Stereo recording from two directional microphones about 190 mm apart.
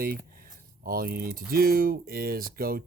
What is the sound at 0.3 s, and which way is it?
Speech, 50° right (ahead or behind).